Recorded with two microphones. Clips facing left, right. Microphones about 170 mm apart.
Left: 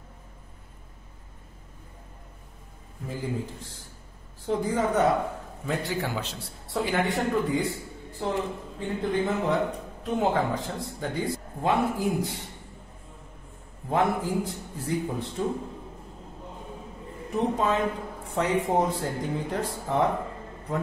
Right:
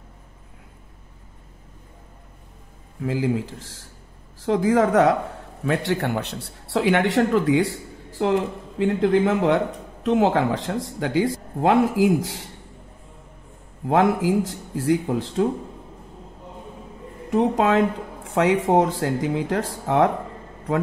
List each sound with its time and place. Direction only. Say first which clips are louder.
3.0 s speech: right 9 dB; 90° right
5.6 s a man's voice: right 7 dB; 75° right (ahead or behind); by 12.4 s 90° right
13.8 s speech: right 6 dB; 90° right
17.3 s speech: right 6 dB; 90° right